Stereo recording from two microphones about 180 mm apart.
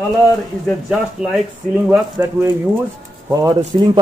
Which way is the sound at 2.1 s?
20° right (ahead or behind).